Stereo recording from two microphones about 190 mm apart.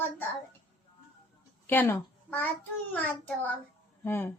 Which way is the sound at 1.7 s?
10° left (ahead or behind).